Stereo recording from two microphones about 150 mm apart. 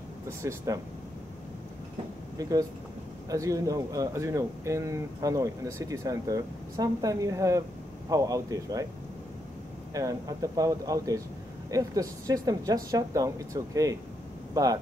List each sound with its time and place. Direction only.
0.4 s speech: 20° right (ahead or behind)
3.3 s speech: 20° right (ahead or behind)
9.9 s speech: 25° right (ahead or behind)